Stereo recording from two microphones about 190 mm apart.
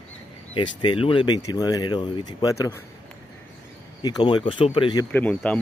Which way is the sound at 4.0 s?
20° left (ahead or behind).